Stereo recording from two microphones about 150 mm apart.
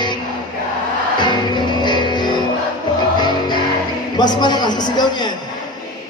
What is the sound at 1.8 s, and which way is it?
Music, 30° left (ahead or behind).